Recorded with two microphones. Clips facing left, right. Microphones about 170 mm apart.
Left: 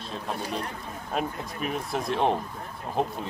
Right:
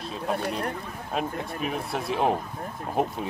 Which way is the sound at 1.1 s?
Centre (ahead or behind).